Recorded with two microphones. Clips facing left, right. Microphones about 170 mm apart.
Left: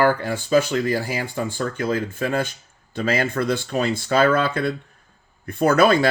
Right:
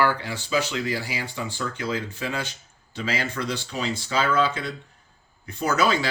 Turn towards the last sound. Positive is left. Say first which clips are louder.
# left 7 dB
turn(degrees=55)  # may be behind; listen again after turning